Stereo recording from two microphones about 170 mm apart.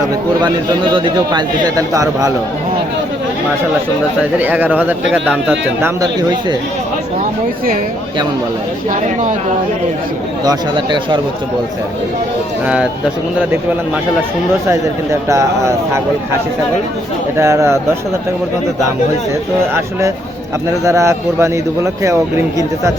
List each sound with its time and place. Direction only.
0.4 s a man's voice: 25° right (ahead or behind)
4.2 s speech: 10° right (ahead or behind)
6.0 s a man's voice: 25° right (ahead or behind)
10.4 s a man's voice: 25° right (ahead or behind)
12.6 s speech: 5° right (ahead or behind)
14.7 s speech: 15° right (ahead or behind)
17.3 s speech: 15° right (ahead or behind)
19.7 s speech: 15° right (ahead or behind)